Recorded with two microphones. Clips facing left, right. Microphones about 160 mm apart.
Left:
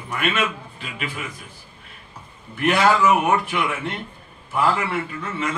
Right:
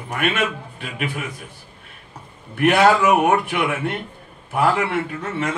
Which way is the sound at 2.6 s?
60° right (ahead or behind).